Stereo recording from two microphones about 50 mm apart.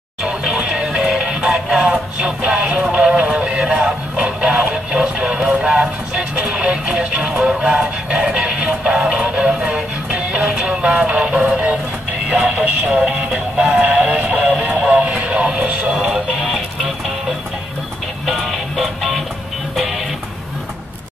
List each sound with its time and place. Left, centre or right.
0.2 s music: centre
12.3 s synthetic singing: centre
13.8 s music: right
15.9 s music: centre
18.2 s music: centre